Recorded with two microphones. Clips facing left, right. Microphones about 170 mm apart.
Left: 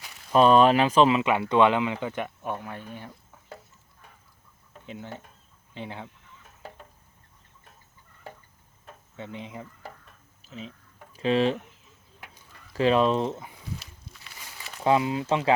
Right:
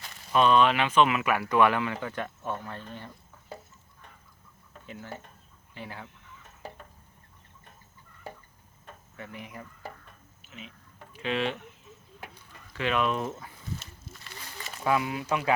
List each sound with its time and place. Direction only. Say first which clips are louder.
0.3 s speech: left 4 dB; 40° left (ahead or behind); by 3.1 s 10° left (ahead or behind)
4.7 s a sound: left 2 dB; 20° left (ahead or behind)
5.7 s speech: left 4 dB; 20° left (ahead or behind)
9.1 s speech: left 4 dB; 20° left (ahead or behind)
10.5 s speech: left 6 dB; 35° left (ahead or behind)
12.7 s speech: left 6 dB; 35° left (ahead or behind)
14.0 s a sound: right 2 dB; centre (ahead or behind)
14.8 s speech: left 4 dB; 25° left (ahead or behind)